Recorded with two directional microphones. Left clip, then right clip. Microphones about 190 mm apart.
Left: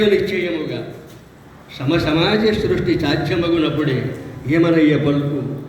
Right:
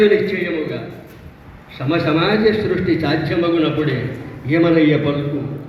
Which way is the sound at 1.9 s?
80° left.